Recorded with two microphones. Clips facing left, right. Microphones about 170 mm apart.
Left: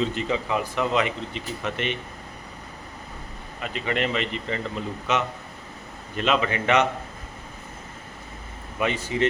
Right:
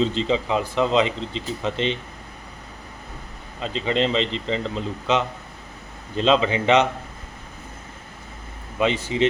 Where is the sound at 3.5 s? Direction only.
25° right (ahead or behind).